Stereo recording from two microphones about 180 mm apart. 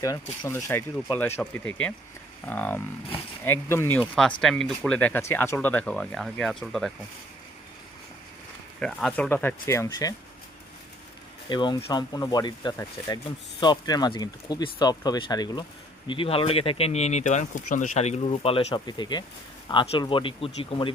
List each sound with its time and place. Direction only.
0.4 s speech: 15° left (ahead or behind)
8.8 s speech: centre (ahead or behind); by 10.2 s 20° left (ahead or behind)
11.4 s speech: 25° left (ahead or behind)